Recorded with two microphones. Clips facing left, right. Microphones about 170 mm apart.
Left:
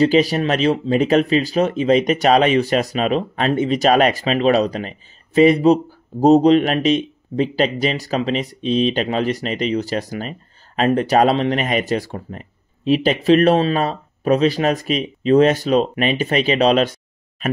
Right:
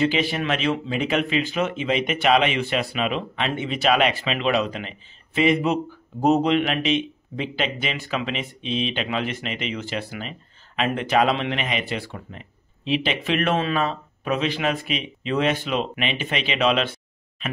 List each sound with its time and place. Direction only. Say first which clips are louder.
0.0 s speech: left 7 dB; 40° left (ahead or behind)